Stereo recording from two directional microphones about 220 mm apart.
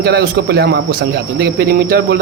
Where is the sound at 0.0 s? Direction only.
45° right (ahead or behind).